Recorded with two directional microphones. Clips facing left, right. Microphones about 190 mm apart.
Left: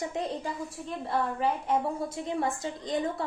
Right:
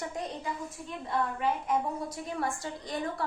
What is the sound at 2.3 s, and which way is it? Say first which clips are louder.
Speech: left 3 dB; 20° left (ahead or behind).